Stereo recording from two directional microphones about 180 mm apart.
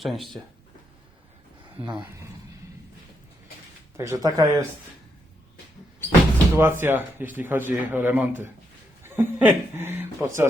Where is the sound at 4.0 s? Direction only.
20° right (ahead or behind).